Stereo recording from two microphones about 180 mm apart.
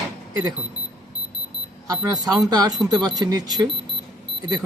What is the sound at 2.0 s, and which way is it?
Speech, 20° right (ahead or behind).